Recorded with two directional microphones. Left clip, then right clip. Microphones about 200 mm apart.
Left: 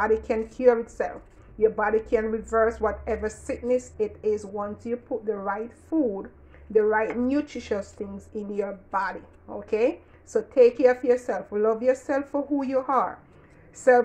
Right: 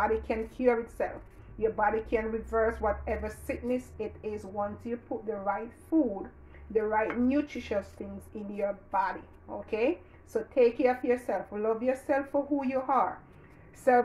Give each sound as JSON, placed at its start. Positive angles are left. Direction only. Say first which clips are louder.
{"t": 0.0, "sound": "a woman's voice", "louder": "left 5 dB", "side_deg": 40}